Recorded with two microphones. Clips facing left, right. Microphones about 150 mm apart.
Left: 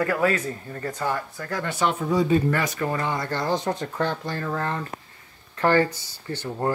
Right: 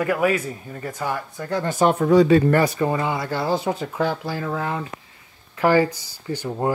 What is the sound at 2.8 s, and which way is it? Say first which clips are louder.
Speech: right 4 dB; 15° right (ahead or behind).